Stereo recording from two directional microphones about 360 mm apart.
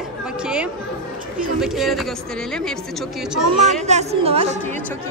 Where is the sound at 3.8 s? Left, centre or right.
Centre.